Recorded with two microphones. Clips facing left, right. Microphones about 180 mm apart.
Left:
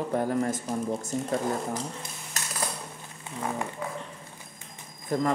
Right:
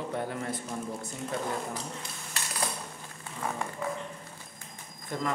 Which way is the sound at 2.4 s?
45° left (ahead or behind).